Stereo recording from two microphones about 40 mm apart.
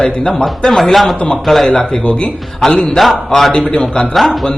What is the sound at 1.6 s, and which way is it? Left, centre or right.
Speech, left.